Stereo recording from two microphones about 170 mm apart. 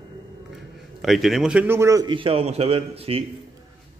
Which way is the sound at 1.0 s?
Centre (ahead or behind).